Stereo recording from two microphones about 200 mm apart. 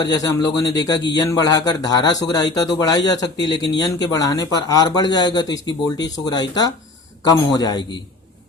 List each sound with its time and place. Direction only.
0.0 s speech: 20° left (ahead or behind)